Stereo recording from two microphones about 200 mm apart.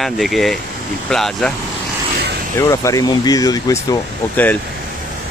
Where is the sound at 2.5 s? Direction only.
15° left (ahead or behind).